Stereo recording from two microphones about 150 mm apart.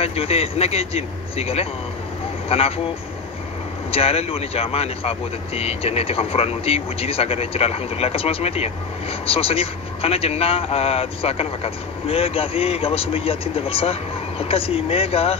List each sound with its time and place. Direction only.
0.0 s speech: 40° left (ahead or behind)
3.9 s speech: 40° left (ahead or behind)